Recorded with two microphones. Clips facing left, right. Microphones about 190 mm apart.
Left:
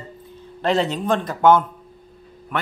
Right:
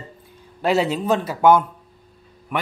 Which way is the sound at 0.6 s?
10° right (ahead or behind).